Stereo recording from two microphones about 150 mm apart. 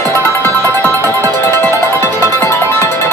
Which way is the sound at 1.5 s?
20° left (ahead or behind).